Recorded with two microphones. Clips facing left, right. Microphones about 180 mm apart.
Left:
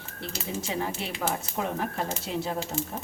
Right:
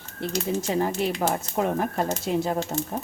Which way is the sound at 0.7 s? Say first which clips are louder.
Right 7 dB; 50° right (ahead or behind).